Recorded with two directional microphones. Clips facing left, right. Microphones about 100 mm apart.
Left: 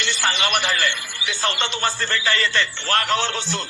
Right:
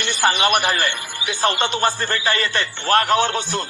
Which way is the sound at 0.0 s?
50° right (ahead or behind).